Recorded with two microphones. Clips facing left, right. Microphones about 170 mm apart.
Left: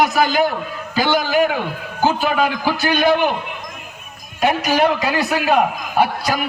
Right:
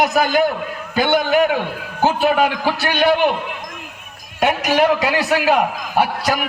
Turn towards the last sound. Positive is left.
turn(degrees=-80)